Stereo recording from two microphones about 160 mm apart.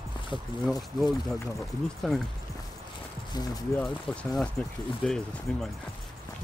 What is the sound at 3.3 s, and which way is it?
Speech, 25° left (ahead or behind).